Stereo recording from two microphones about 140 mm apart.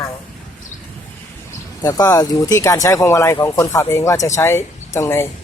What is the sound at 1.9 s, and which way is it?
Speech, 25° left (ahead or behind).